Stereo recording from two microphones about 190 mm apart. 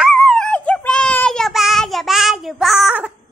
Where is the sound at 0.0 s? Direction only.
Centre (ahead or behind).